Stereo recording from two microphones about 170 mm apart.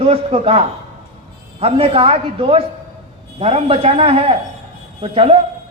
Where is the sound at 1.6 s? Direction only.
35° right (ahead or behind).